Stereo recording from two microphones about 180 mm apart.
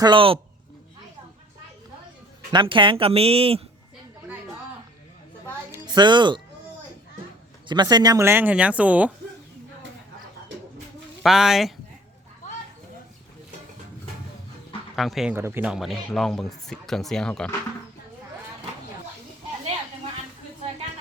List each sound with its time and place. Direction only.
0.0 s speech: 30° right (ahead or behind)
2.5 s speech: 25° right (ahead or behind)
5.7 s a woman's voice: 25° right (ahead or behind)
7.7 s speech: 25° right (ahead or behind); by 9.1 s 10° right (ahead or behind)
11.2 s speech: centre (ahead or behind)
14.9 s speech: centre (ahead or behind)
15.4 s speech: 10° right (ahead or behind); by 17.5 s 5° left (ahead or behind)